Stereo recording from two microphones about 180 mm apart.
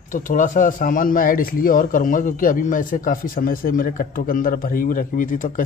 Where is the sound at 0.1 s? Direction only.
45° left (ahead or behind).